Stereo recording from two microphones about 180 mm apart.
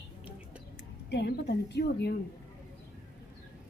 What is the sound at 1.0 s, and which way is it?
A woman's voice, 65° left (ahead or behind).